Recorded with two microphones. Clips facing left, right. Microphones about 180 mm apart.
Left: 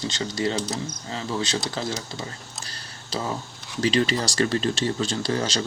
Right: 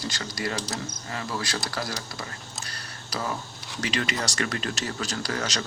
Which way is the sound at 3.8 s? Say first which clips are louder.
Left 7 dB; 30° left (ahead or behind).